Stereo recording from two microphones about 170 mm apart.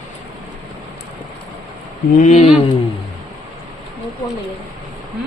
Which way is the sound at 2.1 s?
45° left (ahead or behind).